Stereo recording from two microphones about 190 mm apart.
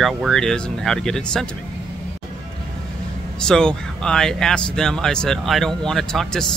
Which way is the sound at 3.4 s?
5° left (ahead or behind).